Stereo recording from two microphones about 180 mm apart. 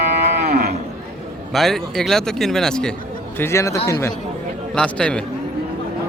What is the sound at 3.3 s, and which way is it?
Speech, 15° left (ahead or behind).